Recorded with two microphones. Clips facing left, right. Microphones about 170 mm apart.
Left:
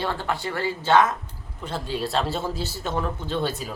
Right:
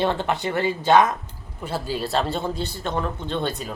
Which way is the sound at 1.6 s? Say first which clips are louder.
Right 1 dB; 5° right (ahead or behind).